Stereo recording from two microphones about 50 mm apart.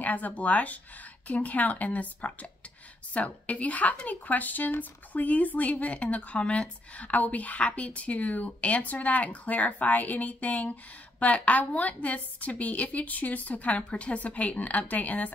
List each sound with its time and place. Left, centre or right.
0.0 s a woman's voice: left
3.4 s a woman's voice: left